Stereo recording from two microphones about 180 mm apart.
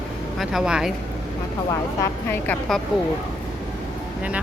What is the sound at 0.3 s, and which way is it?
Speech, 5° right (ahead or behind).